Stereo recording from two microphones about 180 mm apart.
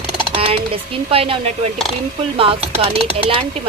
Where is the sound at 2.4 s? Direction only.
30° right (ahead or behind).